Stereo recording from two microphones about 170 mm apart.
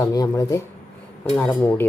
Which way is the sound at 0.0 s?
20° left (ahead or behind).